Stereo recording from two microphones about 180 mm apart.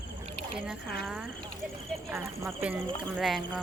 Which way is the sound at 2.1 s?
15° right (ahead or behind).